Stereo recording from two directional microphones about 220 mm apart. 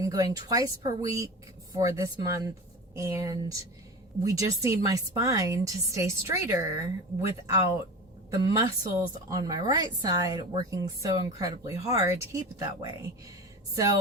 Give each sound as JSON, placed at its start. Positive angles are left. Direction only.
{"t": 0.0, "sound": "speech", "side_deg": -15}
{"t": 8.8, "sound": "speech", "side_deg": -15}